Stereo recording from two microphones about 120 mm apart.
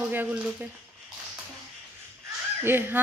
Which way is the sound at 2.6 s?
20° right (ahead or behind).